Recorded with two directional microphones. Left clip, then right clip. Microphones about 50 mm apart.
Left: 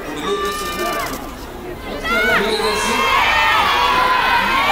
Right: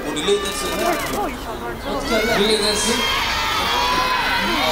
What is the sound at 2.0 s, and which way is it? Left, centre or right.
Crowd, left.